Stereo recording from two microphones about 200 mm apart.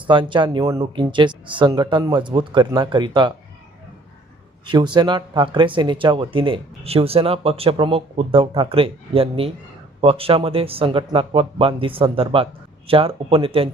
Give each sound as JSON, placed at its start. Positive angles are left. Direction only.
{"t": 0.1, "sound": "speech", "side_deg": -25}
{"t": 4.6, "sound": "speech", "side_deg": -25}